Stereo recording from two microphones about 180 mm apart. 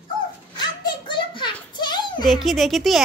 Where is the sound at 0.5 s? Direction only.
25° left (ahead or behind).